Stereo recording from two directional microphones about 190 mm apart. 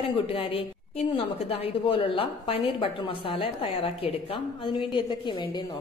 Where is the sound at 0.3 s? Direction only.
30° left (ahead or behind).